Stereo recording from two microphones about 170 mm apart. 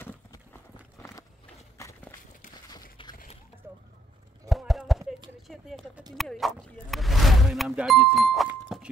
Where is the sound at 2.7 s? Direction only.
25° left (ahead or behind).